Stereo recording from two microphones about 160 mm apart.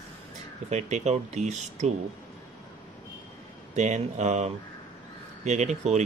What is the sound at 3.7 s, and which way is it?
Speech, 50° right (ahead or behind).